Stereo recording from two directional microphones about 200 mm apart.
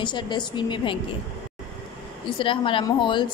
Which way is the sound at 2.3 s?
25° left (ahead or behind).